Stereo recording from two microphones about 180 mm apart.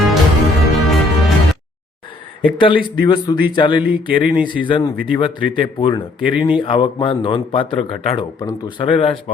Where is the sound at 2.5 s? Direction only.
25° left (ahead or behind).